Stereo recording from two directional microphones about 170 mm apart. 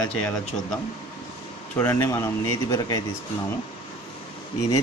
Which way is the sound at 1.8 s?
15° left (ahead or behind).